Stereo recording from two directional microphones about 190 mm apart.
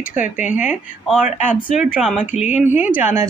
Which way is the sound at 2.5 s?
10° right (ahead or behind).